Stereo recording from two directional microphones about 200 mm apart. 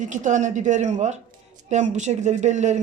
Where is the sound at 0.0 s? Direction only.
40° right (ahead or behind).